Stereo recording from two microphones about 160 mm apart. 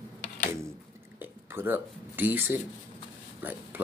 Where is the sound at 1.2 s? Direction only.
10° right (ahead or behind).